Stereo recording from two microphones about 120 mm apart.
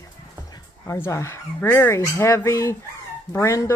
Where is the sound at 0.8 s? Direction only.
20° left (ahead or behind).